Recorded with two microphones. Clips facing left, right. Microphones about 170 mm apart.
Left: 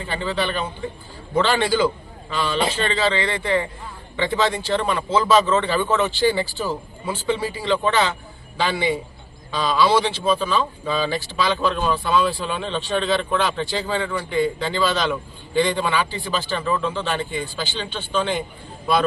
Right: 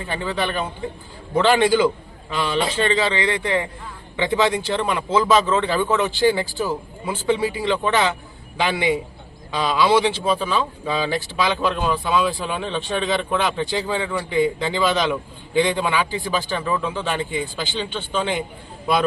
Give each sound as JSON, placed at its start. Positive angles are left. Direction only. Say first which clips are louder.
{"t": 0.1, "sound": "a man's voice", "louder": "even", "side_deg": -15}